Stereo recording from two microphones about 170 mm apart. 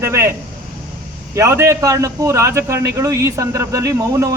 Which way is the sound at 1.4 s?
15° right (ahead or behind).